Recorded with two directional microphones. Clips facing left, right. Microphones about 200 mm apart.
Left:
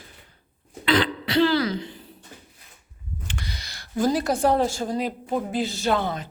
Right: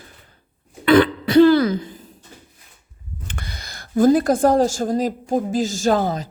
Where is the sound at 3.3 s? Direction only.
55° right (ahead or behind).